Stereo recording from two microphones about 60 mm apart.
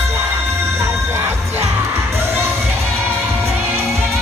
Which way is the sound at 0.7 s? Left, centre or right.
Right.